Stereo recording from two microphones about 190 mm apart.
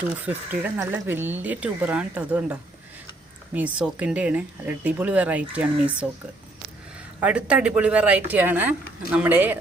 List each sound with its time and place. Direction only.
0.3 s speech: 10° right (ahead or behind)
7.2 s speech: 5° right (ahead or behind)